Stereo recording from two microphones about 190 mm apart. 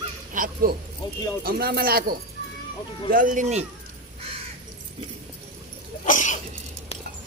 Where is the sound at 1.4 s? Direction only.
55° right (ahead or behind).